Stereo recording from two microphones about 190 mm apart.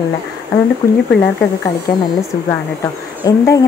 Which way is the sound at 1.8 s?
15° left (ahead or behind).